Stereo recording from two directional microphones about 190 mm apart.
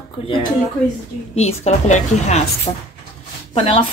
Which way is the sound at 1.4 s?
35° left (ahead or behind).